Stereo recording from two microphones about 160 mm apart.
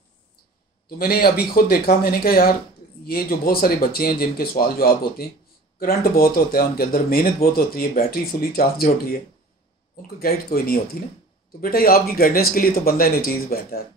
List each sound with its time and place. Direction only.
0.8 s speech: 70° left (ahead or behind)
10.1 s speech: 70° left (ahead or behind)